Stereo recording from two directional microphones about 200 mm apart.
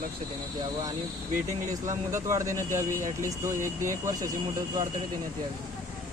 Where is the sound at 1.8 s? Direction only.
15° right (ahead or behind).